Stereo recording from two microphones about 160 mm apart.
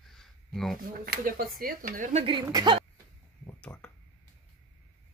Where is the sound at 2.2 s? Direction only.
30° right (ahead or behind).